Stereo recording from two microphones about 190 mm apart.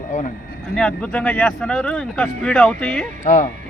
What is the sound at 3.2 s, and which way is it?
Speech, 40° left (ahead or behind).